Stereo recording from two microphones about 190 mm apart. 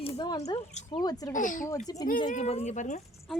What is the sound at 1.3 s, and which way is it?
A woman's voice, 45° left (ahead or behind).